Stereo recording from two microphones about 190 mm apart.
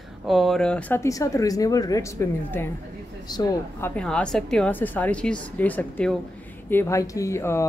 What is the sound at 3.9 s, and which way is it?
Speech, 5° left (ahead or behind).